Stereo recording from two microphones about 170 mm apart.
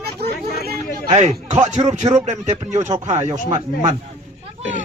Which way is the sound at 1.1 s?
45° right (ahead or behind).